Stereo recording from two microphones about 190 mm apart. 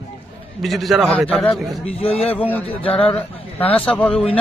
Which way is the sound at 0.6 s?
Centre (ahead or behind).